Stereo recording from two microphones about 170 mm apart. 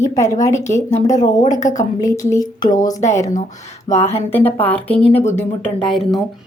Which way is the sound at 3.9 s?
40° left (ahead or behind).